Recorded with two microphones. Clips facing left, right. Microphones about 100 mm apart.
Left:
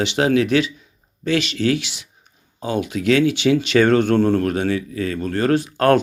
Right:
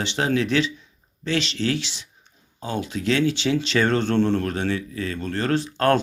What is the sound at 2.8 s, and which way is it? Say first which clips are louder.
Speech: left 5 dB; 65° left (ahead or behind).